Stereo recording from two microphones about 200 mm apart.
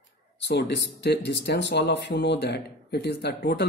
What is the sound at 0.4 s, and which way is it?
Speech, 55° left (ahead or behind).